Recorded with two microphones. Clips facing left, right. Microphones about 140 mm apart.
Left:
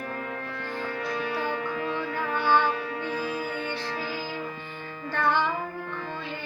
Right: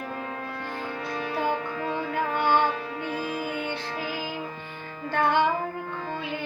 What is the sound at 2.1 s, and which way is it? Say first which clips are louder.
Music: right 3 dB; 50° right (ahead or behind).